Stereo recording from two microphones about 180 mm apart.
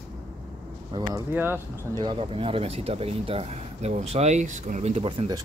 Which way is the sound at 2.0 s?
30° right (ahead or behind).